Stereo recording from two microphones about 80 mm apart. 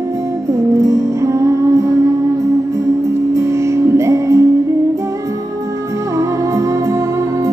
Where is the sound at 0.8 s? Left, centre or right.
Right.